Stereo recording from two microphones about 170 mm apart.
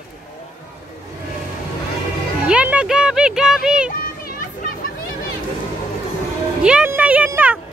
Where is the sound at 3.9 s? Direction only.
55° left (ahead or behind).